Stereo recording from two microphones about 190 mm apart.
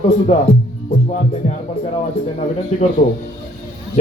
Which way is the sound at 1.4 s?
35° left (ahead or behind).